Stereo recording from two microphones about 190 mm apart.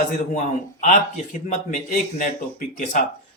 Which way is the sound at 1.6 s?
45° left (ahead or behind).